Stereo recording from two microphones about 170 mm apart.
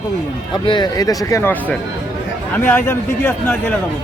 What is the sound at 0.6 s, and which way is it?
Speech, 25° left (ahead or behind).